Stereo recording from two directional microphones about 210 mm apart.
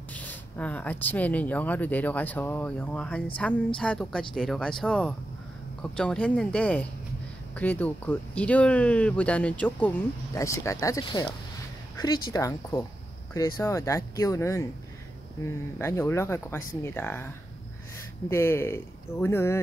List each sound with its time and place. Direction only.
0.1 s speech: 5° left (ahead or behind)
15.8 s speech: 10° left (ahead or behind)
18.3 s speech: 10° left (ahead or behind)